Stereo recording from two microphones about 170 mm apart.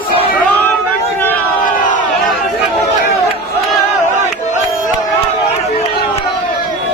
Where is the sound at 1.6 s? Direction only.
50° left (ahead or behind).